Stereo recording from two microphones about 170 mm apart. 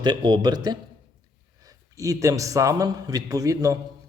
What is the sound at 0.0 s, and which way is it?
A man's voice, 25° right (ahead or behind).